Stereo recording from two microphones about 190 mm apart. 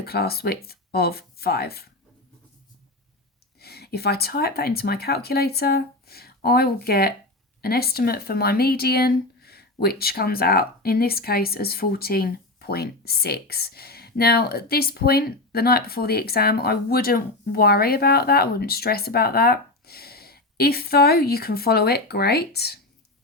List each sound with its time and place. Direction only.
0.0 s speech: 55° left (ahead or behind)
3.6 s speech: 55° left (ahead or behind)